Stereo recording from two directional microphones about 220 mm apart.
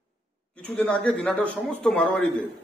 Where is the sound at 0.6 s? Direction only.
5° left (ahead or behind).